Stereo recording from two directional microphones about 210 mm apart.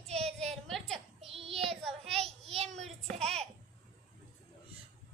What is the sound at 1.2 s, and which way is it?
Child singing, 30° right (ahead or behind).